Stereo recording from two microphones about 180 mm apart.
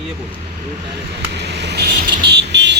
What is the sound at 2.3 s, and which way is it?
Vehicle, 75° right (ahead or behind).